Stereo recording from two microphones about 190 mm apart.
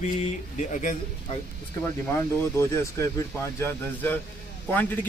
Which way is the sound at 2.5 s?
15° left (ahead or behind).